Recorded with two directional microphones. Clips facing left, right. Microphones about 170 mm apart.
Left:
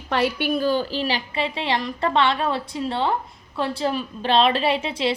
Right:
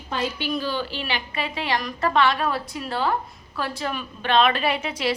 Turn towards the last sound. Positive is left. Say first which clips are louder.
# left 2 dB
turn(degrees=30)  # may be behind; listen again after turning